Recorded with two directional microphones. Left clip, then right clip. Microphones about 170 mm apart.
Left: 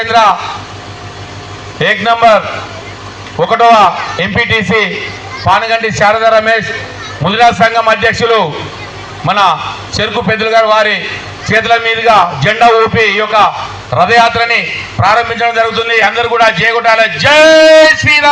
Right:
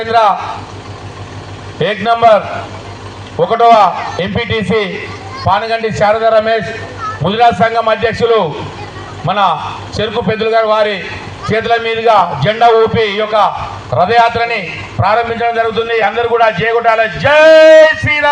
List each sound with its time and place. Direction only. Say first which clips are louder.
1.8 s a man's voice: left 2 dB; 25° left (ahead or behind)
3.4 s a man's voice: left 1 dB; 30° left (ahead or behind)